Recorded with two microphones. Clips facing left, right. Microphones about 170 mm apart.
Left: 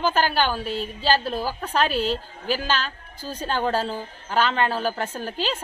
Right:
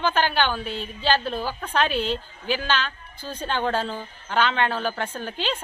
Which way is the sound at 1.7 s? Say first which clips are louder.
Left 1 dB; 40° left (ahead or behind).